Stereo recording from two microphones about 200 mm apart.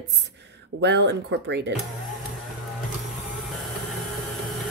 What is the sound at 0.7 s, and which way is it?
Speech, 60° right (ahead or behind).